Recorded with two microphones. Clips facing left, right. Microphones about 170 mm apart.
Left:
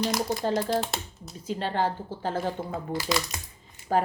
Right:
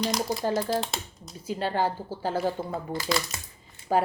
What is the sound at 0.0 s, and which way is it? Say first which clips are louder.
Speech: even; centre (ahead or behind).